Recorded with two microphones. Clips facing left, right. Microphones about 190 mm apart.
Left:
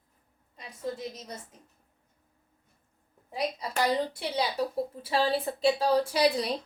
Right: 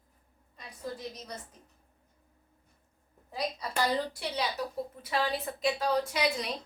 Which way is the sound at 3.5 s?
25° left (ahead or behind).